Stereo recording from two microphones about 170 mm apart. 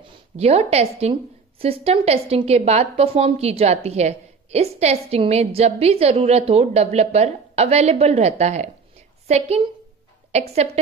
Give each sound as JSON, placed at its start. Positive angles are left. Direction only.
{"t": 0.0, "sound": "a woman's voice", "side_deg": -35}
{"t": 10.3, "sound": "a woman's voice", "side_deg": -40}